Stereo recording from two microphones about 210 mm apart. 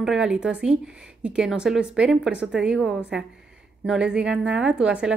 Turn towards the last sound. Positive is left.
turn(degrees=-5)  # may be behind; listen again after turning